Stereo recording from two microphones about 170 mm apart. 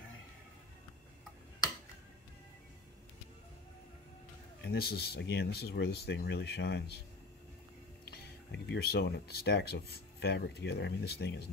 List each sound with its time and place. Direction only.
4.6 s speech: 70° left (ahead or behind)
8.1 s speech: 80° left